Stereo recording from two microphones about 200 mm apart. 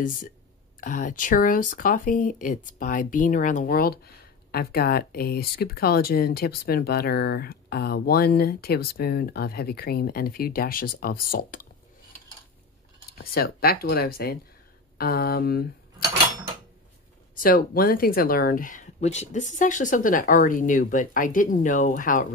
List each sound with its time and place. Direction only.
0.7 s speech: 40° left (ahead or behind)
13.2 s speech: 50° left (ahead or behind)
17.4 s speech: 45° left (ahead or behind)